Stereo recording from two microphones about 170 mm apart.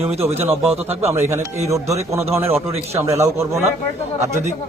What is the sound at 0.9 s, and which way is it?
Speech, 15° right (ahead or behind).